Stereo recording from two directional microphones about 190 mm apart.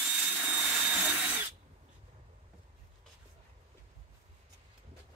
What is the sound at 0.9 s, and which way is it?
Drill, 5° right (ahead or behind).